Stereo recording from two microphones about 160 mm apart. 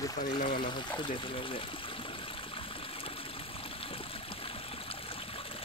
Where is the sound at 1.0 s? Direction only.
30° left (ahead or behind).